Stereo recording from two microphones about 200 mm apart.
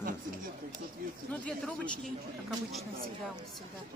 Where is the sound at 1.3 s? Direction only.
5° left (ahead or behind).